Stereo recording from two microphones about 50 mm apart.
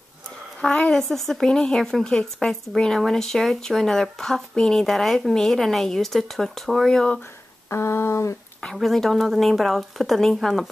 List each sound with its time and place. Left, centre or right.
0.6 s speech: centre
7.7 s a sound: left
8.7 s speech: centre